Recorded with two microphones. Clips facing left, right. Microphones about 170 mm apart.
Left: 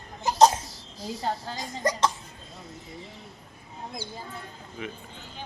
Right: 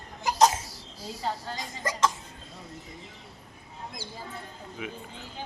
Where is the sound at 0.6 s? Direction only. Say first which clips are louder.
Left 3 dB; 10° right (ahead or behind).